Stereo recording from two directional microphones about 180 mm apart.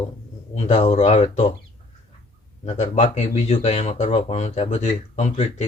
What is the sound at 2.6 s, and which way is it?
Speech, 40° left (ahead or behind).